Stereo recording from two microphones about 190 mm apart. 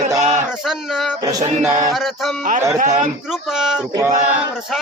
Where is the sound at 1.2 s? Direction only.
15° right (ahead or behind).